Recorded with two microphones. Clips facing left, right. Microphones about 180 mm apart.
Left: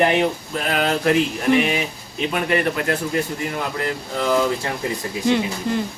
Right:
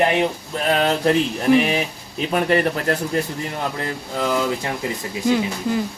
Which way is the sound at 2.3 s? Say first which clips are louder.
Right 3 dB; 40° right (ahead or behind).